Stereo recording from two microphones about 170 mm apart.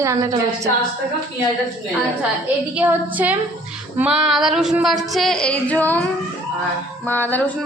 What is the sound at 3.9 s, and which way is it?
Female singing, 5° right (ahead or behind).